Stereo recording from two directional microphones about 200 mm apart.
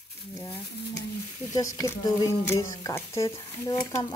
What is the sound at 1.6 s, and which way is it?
Speech, 15° left (ahead or behind).